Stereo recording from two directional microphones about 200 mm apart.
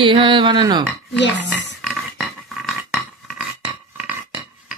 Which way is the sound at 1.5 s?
Centre (ahead or behind).